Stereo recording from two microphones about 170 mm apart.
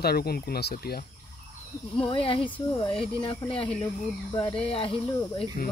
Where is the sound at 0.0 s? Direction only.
65° left (ahead or behind).